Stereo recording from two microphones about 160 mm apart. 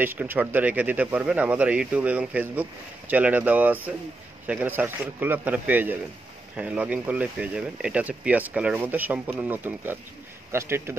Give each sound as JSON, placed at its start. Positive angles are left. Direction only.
{"t": 0.0, "sound": "speech", "side_deg": -10}